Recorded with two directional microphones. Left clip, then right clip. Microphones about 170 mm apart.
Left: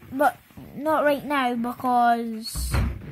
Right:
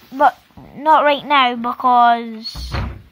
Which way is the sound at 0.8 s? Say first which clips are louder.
Right 9 dB; 15° left (ahead or behind).